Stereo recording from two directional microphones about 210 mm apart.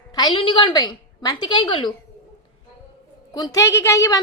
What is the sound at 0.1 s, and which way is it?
A woman's voice, 20° left (ahead or behind).